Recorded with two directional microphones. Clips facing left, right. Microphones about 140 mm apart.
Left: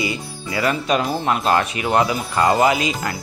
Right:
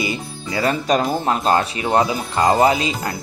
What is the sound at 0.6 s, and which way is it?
Speech, 40° right (ahead or behind).